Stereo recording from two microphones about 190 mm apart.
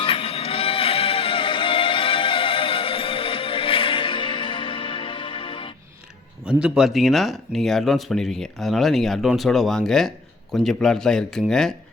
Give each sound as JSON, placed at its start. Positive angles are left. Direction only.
{"t": 0.0, "sound": "music", "side_deg": 30}
{"t": 6.5, "sound": "speech", "side_deg": -5}